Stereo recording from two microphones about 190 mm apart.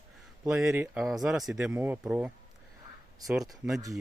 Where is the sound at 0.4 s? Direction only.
5° right (ahead or behind).